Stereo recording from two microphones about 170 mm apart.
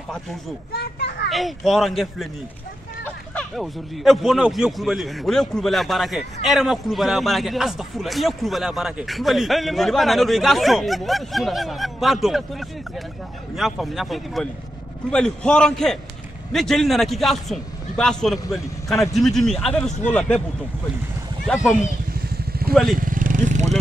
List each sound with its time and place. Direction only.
0.7 s children playing: 65° left (ahead or behind)
1.3 s a man's voice: centre (ahead or behind)
3.3 s a man's voice: centre (ahead or behind)
22.1 s vehicle: 60° right (ahead or behind); by 23.7 s 45° right (ahead or behind)